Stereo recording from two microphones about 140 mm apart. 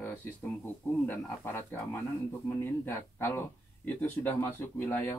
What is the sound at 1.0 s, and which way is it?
Speech, 15° left (ahead or behind).